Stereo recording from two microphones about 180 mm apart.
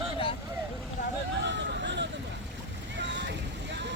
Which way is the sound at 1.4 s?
75° right (ahead or behind).